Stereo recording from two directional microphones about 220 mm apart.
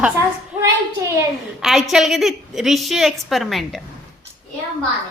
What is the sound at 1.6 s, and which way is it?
A woman's voice, centre (ahead or behind).